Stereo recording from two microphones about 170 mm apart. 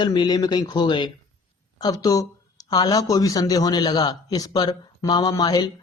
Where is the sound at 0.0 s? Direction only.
25° left (ahead or behind).